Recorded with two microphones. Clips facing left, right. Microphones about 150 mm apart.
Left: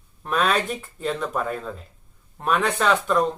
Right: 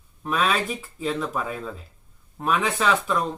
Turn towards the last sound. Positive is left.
turn(degrees=0)  # may be behind; listen again after turning